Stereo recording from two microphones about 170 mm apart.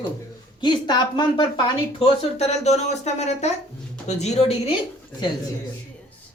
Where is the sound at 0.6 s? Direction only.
25° left (ahead or behind).